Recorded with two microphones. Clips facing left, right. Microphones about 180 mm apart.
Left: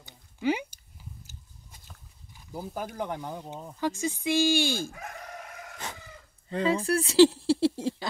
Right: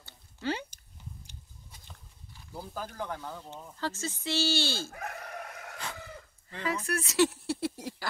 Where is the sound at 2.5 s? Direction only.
15° left (ahead or behind).